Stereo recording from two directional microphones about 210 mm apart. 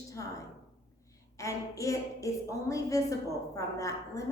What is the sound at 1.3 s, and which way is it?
A woman's voice, 15° left (ahead or behind).